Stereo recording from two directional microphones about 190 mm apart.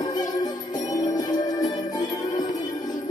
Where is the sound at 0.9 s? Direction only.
20° left (ahead or behind).